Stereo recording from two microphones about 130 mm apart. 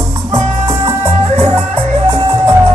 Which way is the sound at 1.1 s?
45° right (ahead or behind).